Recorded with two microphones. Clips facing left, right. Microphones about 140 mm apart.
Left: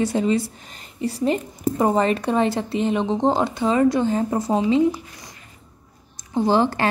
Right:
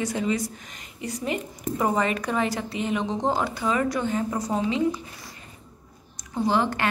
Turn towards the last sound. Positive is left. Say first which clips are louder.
# left 5 dB
turn(degrees=30)  # may be behind; listen again after turning